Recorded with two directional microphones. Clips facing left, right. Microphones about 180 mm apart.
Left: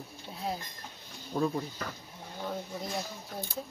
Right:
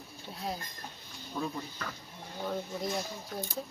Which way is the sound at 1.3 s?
40° left (ahead or behind).